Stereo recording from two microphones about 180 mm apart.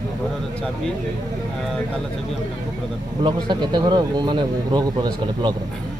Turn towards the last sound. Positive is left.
turn(degrees=-25)  # may be behind; listen again after turning